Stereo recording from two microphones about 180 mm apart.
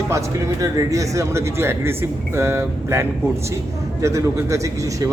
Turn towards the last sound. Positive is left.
turn(degrees=-15)  # may be behind; listen again after turning